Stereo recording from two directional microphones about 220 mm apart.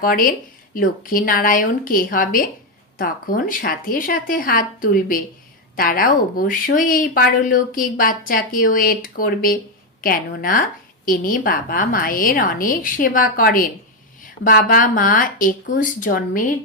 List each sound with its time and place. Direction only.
0.0 s speech: 40° left (ahead or behind)